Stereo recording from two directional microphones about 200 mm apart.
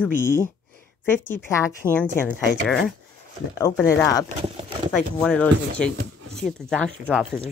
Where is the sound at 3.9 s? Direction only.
15° left (ahead or behind).